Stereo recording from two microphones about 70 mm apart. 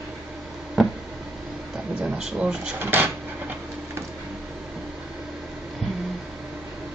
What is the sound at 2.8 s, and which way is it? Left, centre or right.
Speech, right.